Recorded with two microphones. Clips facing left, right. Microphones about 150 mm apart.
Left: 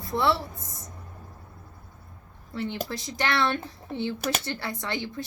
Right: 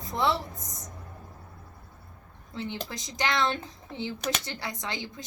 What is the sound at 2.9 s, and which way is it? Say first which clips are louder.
Speech: even; 15° right (ahead or behind).